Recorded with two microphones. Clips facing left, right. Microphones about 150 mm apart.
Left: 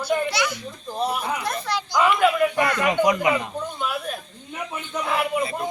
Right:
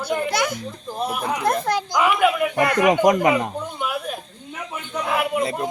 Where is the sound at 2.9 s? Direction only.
45° right (ahead or behind).